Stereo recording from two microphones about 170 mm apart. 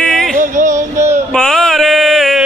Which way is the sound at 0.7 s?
15° right (ahead or behind).